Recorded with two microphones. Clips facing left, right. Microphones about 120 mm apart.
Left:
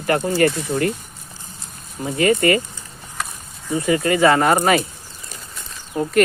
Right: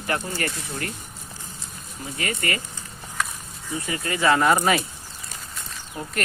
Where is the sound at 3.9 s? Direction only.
70° left (ahead or behind); by 4.8 s 55° left (ahead or behind).